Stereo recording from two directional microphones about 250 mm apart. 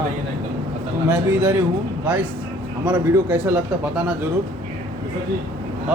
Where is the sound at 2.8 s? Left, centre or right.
Centre.